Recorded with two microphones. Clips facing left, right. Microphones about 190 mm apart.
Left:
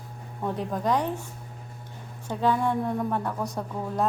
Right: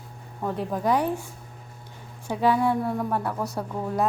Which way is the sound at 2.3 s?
10° right (ahead or behind).